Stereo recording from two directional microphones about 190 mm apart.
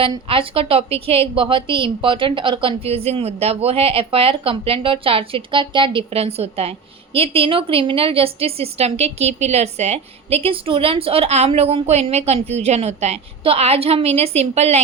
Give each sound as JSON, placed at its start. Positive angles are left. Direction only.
{"t": 0.0, "sound": "a woman's voice", "side_deg": -30}